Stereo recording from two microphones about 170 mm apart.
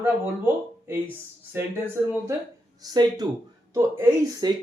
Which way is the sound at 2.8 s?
25° right (ahead or behind).